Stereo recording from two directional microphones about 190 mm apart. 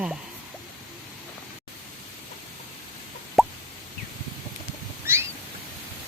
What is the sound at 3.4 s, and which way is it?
Plop, centre (ahead or behind).